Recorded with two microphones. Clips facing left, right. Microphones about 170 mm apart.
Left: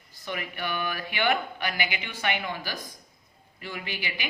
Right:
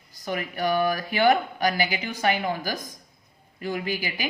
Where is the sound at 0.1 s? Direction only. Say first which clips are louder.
Right 5 dB; 40° right (ahead or behind).